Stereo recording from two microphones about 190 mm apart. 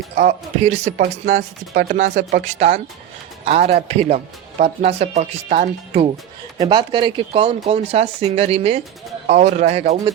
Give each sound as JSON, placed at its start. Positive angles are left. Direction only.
{"t": 0.2, "sound": "speech", "side_deg": -35}
{"t": 1.2, "sound": "speech", "side_deg": -50}
{"t": 2.0, "sound": "speech", "side_deg": -35}
{"t": 6.6, "sound": "speech", "side_deg": -25}